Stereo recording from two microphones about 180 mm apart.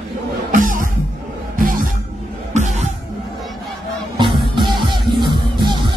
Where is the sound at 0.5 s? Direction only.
45° right (ahead or behind).